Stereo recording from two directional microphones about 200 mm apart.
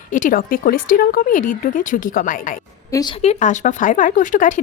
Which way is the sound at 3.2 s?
35° left (ahead or behind).